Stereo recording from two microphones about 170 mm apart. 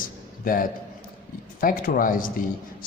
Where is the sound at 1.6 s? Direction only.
55° left (ahead or behind).